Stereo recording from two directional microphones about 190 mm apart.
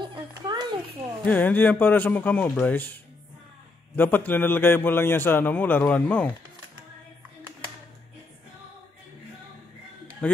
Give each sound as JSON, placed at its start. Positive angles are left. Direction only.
{"t": 0.0, "sound": "a sound", "side_deg": -25}
{"t": 1.2, "sound": "a man's voice", "side_deg": 10}
{"t": 10.2, "sound": "speech", "side_deg": 5}